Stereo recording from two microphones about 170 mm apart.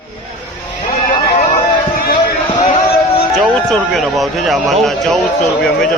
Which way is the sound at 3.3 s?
Centre (ahead or behind).